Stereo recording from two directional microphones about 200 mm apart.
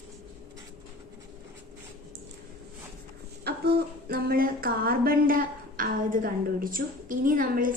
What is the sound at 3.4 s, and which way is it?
Speech, 55° right (ahead or behind).